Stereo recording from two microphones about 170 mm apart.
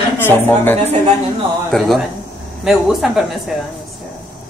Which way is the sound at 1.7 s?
Centre (ahead or behind).